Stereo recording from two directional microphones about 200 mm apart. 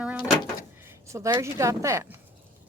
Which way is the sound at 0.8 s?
15° right (ahead or behind).